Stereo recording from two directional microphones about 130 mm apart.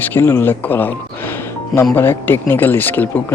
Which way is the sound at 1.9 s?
15° left (ahead or behind).